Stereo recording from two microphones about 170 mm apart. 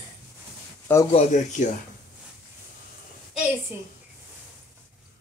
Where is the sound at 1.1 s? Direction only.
45° left (ahead or behind).